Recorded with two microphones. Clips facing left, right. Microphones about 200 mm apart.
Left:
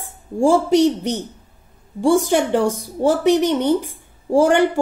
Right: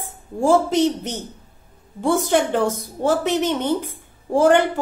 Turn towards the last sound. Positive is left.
turn(degrees=15)  # may be behind; listen again after turning